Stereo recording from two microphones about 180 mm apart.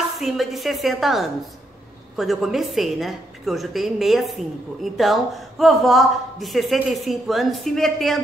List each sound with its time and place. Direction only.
0.2 s a woman's voice: centre (ahead or behind)